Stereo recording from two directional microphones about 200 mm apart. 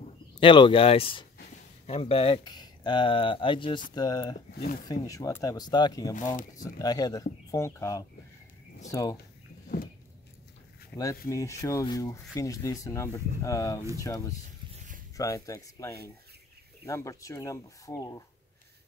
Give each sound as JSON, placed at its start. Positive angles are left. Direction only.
{"t": 0.4, "sound": "speech", "side_deg": 25}
{"t": 6.1, "sound": "speech", "side_deg": 40}
{"t": 6.6, "sound": "speech", "side_deg": 20}
{"t": 10.9, "sound": "speech", "side_deg": 5}